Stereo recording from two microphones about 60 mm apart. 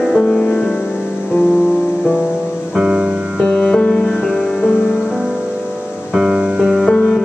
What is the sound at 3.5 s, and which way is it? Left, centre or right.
Music, centre.